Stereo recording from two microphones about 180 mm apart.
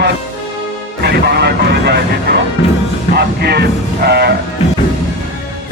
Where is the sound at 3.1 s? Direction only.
65° right (ahead or behind).